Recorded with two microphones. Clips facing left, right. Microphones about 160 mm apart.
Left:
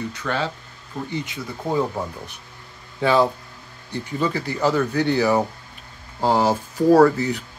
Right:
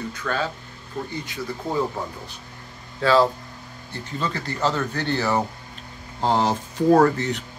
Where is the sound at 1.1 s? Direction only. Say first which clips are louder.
Left 4 dB; 20° left (ahead or behind).